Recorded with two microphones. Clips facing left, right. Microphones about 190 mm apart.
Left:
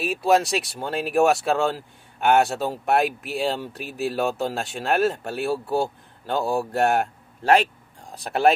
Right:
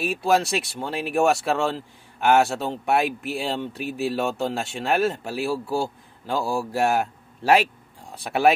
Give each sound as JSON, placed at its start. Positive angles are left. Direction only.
{"t": 0.0, "sound": "speech", "side_deg": 0}